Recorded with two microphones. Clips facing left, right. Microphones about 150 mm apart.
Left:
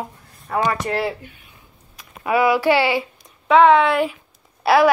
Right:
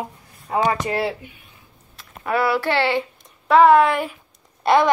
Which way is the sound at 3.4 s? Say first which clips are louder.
Even; 5° right (ahead or behind).